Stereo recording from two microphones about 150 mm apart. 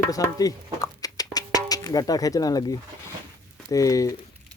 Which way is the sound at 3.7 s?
20° left (ahead or behind).